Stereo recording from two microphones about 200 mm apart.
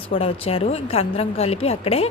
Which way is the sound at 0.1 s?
30° left (ahead or behind).